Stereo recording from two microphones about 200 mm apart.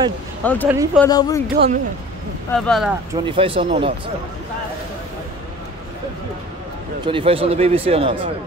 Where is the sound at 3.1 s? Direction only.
25° right (ahead or behind).